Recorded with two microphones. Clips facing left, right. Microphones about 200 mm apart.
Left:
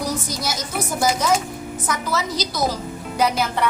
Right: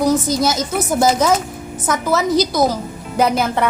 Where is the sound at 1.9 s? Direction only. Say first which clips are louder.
Right 8 dB; 50° right (ahead or behind).